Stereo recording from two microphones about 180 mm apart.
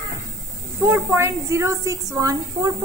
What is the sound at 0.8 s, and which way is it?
A woman's voice, 15° right (ahead or behind).